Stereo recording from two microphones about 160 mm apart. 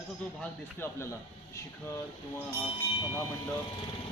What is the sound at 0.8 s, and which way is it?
Speech, 15° left (ahead or behind).